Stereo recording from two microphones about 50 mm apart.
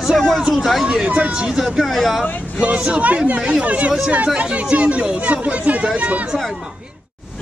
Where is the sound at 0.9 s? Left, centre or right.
Right.